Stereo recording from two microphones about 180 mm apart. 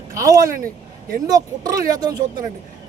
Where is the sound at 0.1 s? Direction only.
20° right (ahead or behind).